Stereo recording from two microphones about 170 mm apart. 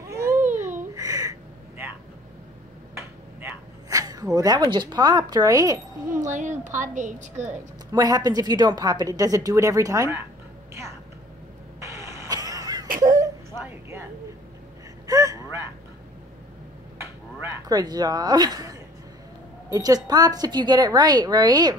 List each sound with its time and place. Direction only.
0.1 s babbling: 15° right (ahead or behind)
2.9 s finger snapping: 15° right (ahead or behind)
3.9 s speech: 20° right (ahead or behind)
6.0 s a woman's voice: 50° right (ahead or behind)
7.9 s speech: 20° right (ahead or behind)
11.8 s a sound: 15° right (ahead or behind)
15.0 s gasp: 20° right (ahead or behind)
17.0 s a sound: 20° right (ahead or behind)
19.7 s speech: 20° right (ahead or behind)